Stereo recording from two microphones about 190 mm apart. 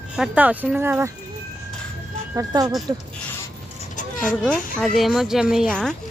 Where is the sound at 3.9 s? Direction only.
45° left (ahead or behind).